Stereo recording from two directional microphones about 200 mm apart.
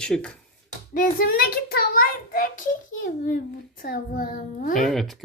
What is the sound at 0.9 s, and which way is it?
A child's voice, 45° left (ahead or behind).